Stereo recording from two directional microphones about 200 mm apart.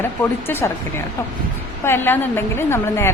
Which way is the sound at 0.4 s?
10° left (ahead or behind).